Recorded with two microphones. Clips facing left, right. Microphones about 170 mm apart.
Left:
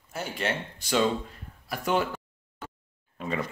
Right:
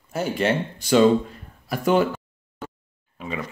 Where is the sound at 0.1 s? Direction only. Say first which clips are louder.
Right 8 dB; 90° right.